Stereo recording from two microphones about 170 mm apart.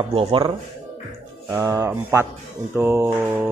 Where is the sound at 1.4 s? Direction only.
20° right (ahead or behind).